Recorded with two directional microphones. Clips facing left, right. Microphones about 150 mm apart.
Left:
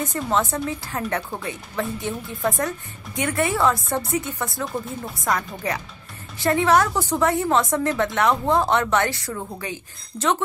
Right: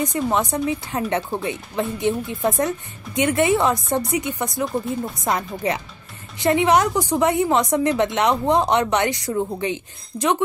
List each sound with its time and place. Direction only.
0.0 s a woman's voice: 15° right (ahead or behind)